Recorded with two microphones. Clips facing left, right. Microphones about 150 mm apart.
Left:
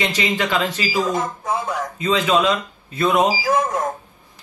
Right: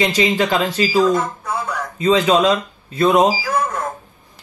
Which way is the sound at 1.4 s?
20° left (ahead or behind).